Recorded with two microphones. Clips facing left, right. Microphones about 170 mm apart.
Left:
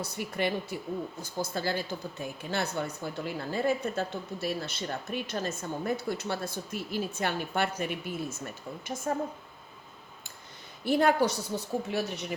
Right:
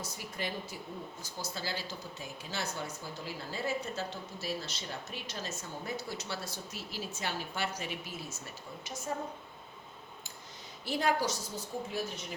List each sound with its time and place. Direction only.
0.0 s speech: 65° left (ahead or behind)
10.8 s speech: 55° left (ahead or behind)